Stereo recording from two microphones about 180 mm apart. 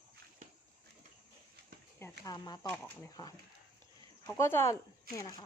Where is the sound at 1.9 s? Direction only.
15° left (ahead or behind).